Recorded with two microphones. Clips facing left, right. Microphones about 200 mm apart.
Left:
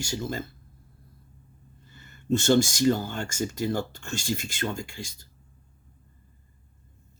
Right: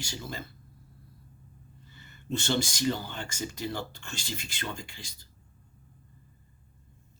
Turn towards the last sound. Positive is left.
turn(degrees=45)  # may be behind; listen again after turning